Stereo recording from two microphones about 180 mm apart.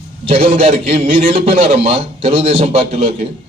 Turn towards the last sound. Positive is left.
turn(degrees=-35)  # may be behind; listen again after turning